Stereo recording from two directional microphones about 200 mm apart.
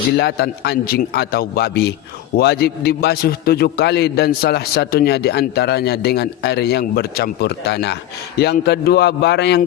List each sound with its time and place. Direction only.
0.2 s a man's voice: 55° left (ahead or behind)